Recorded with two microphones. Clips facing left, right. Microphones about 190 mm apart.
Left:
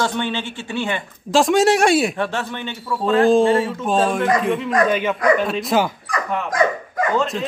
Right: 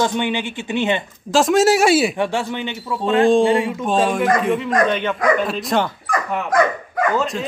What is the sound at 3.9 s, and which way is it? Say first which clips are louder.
Speech: right 1 dB; centre (ahead or behind).